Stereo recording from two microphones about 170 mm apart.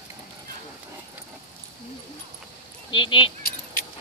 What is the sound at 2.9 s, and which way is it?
Speech, 30° left (ahead or behind).